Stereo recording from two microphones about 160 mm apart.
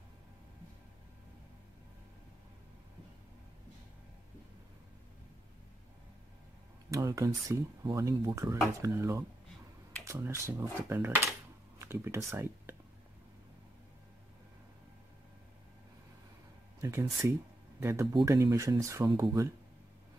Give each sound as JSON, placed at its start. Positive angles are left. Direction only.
{"t": 6.9, "sound": "speech", "side_deg": -20}
{"t": 16.8, "sound": "speech", "side_deg": -20}